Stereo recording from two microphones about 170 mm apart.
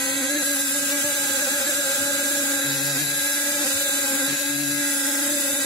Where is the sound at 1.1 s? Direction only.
Centre (ahead or behind).